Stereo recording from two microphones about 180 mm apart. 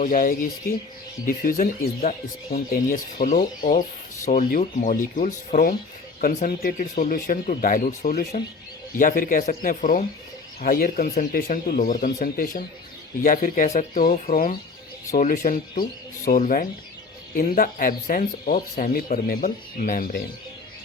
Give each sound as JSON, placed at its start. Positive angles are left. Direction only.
{"t": 0.0, "sound": "speech", "side_deg": 50}